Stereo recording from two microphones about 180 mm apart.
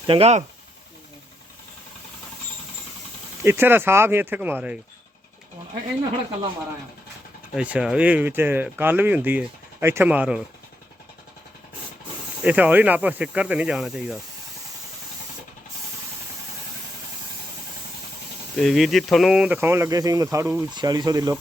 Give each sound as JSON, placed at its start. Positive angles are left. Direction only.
{"t": 0.1, "sound": "speech", "side_deg": -35}
{"t": 3.4, "sound": "speech", "side_deg": -10}
{"t": 7.5, "sound": "speech", "side_deg": -5}
{"t": 12.5, "sound": "speech", "side_deg": -10}
{"t": 18.5, "sound": "speech", "side_deg": 0}